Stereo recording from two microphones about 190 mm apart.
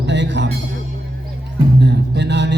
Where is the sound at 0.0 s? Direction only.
65° right (ahead or behind).